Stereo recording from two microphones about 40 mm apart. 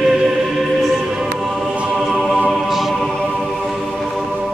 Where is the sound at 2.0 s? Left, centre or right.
Centre.